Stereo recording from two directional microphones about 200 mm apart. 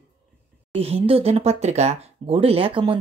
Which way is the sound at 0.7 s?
30° right (ahead or behind).